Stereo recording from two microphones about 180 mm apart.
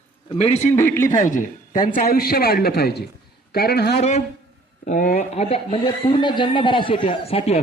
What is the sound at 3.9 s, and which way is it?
A man's voice, 40° left (ahead or behind).